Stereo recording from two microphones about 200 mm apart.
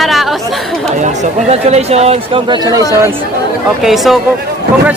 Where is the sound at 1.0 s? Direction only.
35° right (ahead or behind).